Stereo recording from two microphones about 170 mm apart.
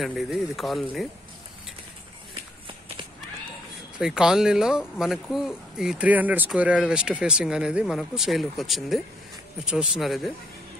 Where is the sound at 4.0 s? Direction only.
5° right (ahead or behind).